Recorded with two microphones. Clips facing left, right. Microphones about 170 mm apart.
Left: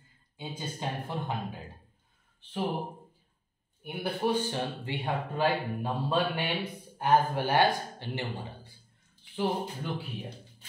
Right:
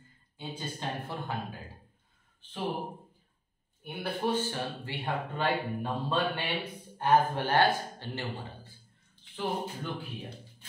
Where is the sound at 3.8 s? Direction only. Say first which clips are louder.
Left 2 dB; 15° left (ahead or behind).